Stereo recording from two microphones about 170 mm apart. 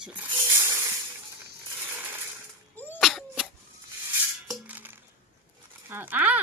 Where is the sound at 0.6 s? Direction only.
15° right (ahead or behind).